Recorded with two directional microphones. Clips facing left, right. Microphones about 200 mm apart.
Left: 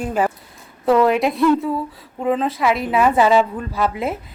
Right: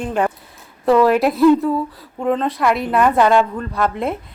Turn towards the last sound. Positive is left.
turn(degrees=5)  # may be behind; listen again after turning